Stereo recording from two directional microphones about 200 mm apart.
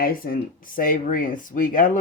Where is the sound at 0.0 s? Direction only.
45° left (ahead or behind).